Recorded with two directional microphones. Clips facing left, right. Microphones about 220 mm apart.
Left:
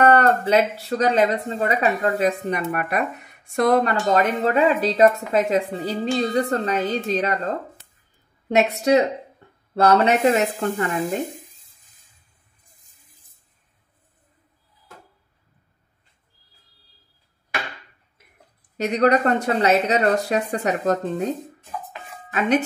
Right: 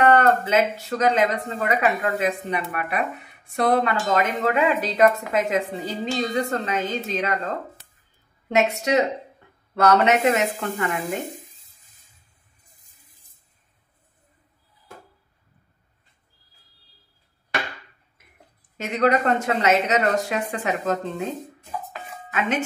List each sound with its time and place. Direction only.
0.0 s speech: 35° left (ahead or behind)
8.5 s speech: 35° left (ahead or behind)
18.8 s speech: 40° left (ahead or behind)